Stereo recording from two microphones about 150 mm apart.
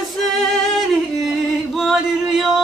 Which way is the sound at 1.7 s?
Centre (ahead or behind).